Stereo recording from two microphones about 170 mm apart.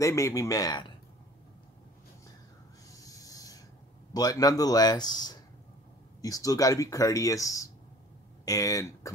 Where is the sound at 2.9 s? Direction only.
20° left (ahead or behind).